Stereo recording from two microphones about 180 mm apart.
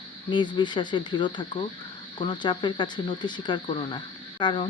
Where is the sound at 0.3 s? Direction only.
25° left (ahead or behind).